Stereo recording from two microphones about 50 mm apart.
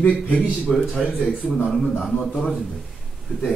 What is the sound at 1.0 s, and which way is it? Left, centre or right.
Speech, centre.